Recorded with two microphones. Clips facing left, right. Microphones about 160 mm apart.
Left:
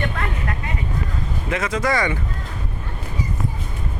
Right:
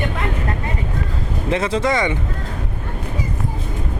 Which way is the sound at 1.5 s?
30° right (ahead or behind).